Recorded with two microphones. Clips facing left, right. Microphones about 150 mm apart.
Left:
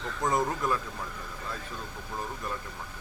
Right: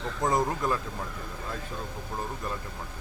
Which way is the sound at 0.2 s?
20° right (ahead or behind).